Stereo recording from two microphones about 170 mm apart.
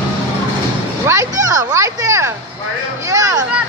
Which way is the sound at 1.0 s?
20° right (ahead or behind).